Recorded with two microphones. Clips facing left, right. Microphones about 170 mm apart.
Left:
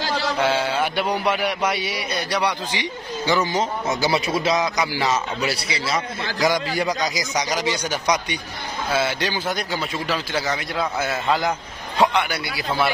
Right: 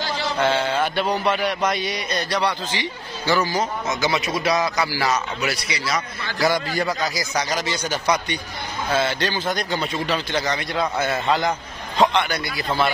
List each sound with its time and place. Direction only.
0.4 s mantra: 10° left (ahead or behind)
3.9 s a man's voice: 30° left (ahead or behind)
6.4 s mantra: 10° left (ahead or behind)
8.8 s speech: 10° left (ahead or behind)
12.0 s mantra: 10° left (ahead or behind)